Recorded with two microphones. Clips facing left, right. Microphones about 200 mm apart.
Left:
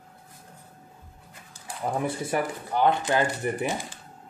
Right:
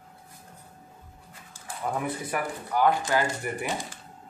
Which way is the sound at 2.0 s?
25° left (ahead or behind).